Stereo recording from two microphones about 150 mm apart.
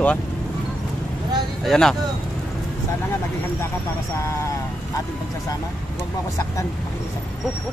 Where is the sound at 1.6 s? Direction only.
Centre (ahead or behind).